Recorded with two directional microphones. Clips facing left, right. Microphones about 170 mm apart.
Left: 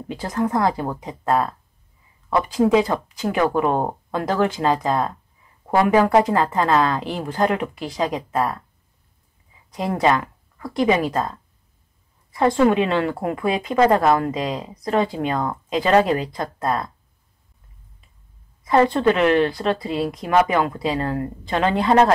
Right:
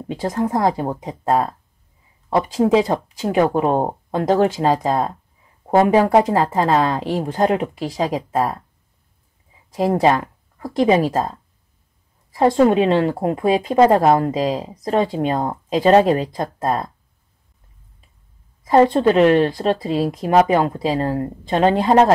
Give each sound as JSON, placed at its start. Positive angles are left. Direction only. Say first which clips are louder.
{"t": 0.1, "sound": "speech", "louder": "right 2 dB", "side_deg": -25}
{"t": 9.8, "sound": "speech", "louder": "right 3 dB", "side_deg": -30}
{"t": 12.6, "sound": "speech", "louder": "right 3 dB", "side_deg": -30}
{"t": 18.7, "sound": "speech", "louder": "right 3 dB", "side_deg": -30}